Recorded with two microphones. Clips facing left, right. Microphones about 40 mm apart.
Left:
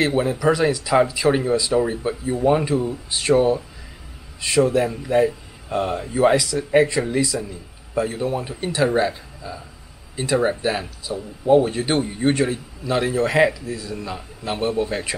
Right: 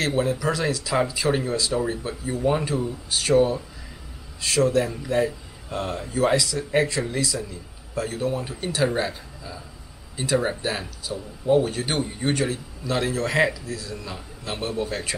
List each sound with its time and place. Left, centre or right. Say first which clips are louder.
0.0 s a man's voice: left 4 dB; centre